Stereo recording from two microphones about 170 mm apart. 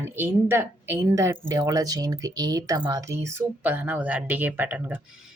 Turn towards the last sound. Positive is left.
turn(degrees=-10)  # may be behind; listen again after turning